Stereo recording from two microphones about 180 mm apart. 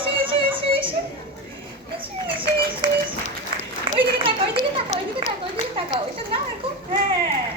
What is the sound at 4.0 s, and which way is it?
A woman's voice, 30° right (ahead or behind).